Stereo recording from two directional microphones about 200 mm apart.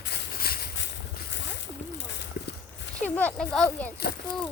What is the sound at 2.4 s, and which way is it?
Horse, 50° left (ahead or behind).